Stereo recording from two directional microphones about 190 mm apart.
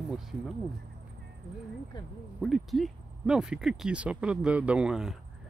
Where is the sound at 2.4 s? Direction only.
Centre (ahead or behind).